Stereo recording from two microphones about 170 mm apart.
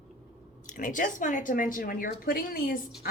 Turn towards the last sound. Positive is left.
turn(degrees=60)  # may be behind; listen again after turning